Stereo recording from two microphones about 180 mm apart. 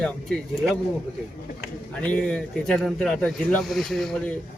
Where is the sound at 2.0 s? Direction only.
5° left (ahead or behind).